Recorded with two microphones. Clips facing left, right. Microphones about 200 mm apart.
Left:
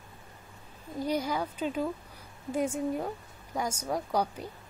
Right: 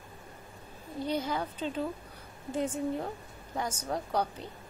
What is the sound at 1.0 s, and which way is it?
A woman's voice, 10° left (ahead or behind).